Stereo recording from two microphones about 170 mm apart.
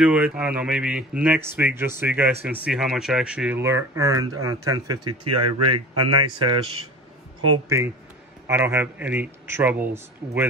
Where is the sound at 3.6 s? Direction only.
15° right (ahead or behind).